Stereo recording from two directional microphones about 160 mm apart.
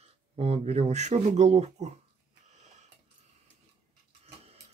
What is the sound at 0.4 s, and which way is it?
Speech, 40° right (ahead or behind).